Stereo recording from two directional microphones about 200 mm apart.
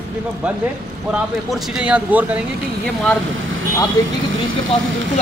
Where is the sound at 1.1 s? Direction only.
5° right (ahead or behind).